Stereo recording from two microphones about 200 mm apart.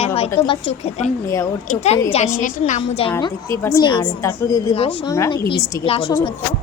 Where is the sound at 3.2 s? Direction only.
15° left (ahead or behind).